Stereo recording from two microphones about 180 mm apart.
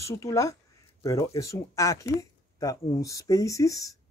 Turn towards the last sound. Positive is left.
turn(degrees=20)  # may be behind; listen again after turning